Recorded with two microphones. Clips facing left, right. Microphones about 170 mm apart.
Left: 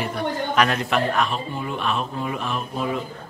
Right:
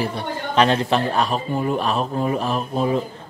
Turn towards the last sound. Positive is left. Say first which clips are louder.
# right 5 dB
turn(degrees=-35)  # may be behind; listen again after turning